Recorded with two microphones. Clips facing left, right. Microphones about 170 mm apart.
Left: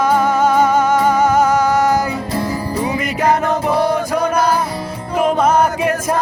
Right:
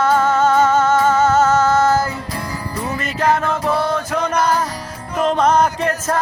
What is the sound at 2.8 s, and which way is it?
Music, 15° left (ahead or behind).